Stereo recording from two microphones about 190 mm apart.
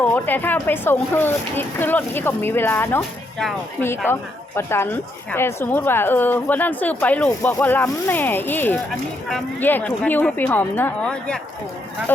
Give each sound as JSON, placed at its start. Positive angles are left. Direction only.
{"t": 0.0, "sound": "a woman's voice", "side_deg": 10}